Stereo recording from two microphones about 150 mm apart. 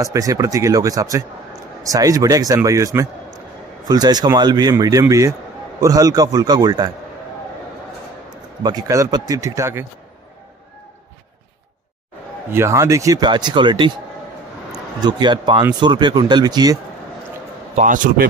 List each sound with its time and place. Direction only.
0.0 s a man's voice: 20° right (ahead or behind)
8.6 s a man's voice: 25° right (ahead or behind)
12.5 s a man's voice: 20° right (ahead or behind)
15.0 s a man's voice: 30° right (ahead or behind)
17.7 s a man's voice: 60° right (ahead or behind)